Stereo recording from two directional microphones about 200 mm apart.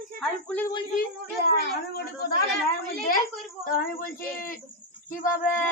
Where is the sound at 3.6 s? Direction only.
45° left (ahead or behind).